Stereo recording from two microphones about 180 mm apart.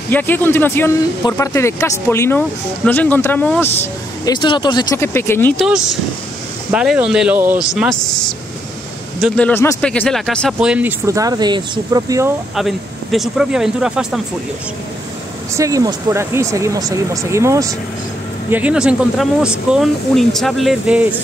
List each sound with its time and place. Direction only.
0.1 s speech: 10° left (ahead or behind)
4.3 s speech: 25° left (ahead or behind)
6.7 s speech: 5° right (ahead or behind)
7.7 s speech: centre (ahead or behind)
10.6 s speech: 10° right (ahead or behind)
12.5 s speech: centre (ahead or behind)
15.5 s speech: 20° right (ahead or behind)
18.5 s speech: 5° right (ahead or behind)